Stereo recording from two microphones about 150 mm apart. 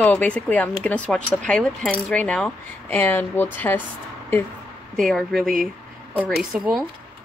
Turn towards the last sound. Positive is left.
turn(degrees=-5)  # may be behind; listen again after turning